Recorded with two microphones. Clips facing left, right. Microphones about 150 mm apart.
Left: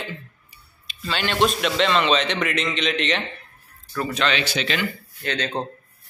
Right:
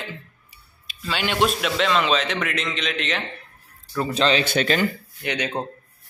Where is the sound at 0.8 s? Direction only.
5° right (ahead or behind).